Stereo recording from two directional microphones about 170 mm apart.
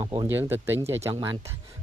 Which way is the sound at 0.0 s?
25° right (ahead or behind).